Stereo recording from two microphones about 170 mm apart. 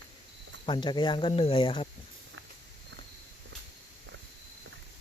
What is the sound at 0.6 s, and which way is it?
Speech, 30° left (ahead or behind).